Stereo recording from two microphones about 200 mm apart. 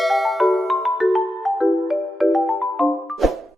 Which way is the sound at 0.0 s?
Centre (ahead or behind).